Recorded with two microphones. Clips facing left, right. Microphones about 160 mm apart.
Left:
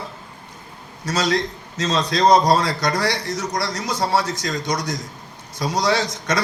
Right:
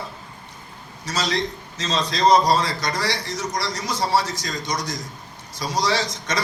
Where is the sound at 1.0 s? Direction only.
60° left (ahead or behind).